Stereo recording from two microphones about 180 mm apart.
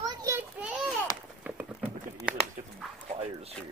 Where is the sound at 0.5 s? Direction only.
5° right (ahead or behind).